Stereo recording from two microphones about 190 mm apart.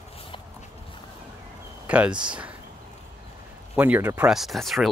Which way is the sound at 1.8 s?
5° right (ahead or behind).